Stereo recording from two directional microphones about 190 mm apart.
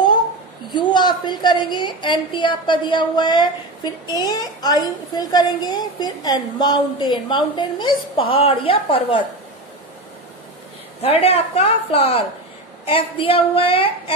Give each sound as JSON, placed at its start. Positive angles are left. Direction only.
{"t": 0.7, "sound": "a woman's voice", "side_deg": 25}
{"t": 11.0, "sound": "a woman's voice", "side_deg": 30}